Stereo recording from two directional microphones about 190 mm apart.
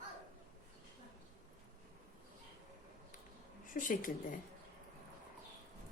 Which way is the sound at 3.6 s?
45° left (ahead or behind).